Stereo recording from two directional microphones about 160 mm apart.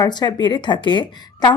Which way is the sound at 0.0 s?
25° left (ahead or behind).